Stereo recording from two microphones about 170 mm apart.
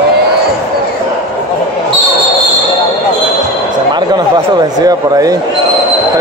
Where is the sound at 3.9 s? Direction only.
25° right (ahead or behind).